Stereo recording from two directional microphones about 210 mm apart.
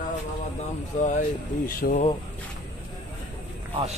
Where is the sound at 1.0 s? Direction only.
40° left (ahead or behind).